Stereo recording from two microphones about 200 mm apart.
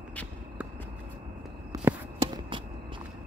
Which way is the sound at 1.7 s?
15° right (ahead or behind).